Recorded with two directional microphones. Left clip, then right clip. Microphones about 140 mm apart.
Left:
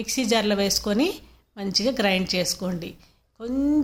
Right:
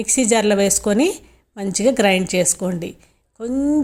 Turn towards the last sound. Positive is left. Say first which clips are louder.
# right 4 dB
turn(degrees=-25)  # may be behind; listen again after turning